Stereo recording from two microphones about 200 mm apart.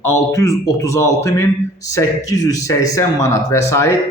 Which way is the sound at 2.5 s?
15° left (ahead or behind).